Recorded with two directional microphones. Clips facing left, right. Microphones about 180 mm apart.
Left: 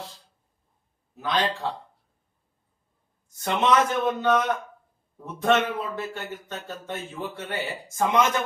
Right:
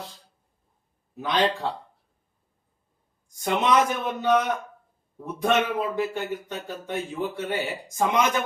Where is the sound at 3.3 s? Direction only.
15° right (ahead or behind).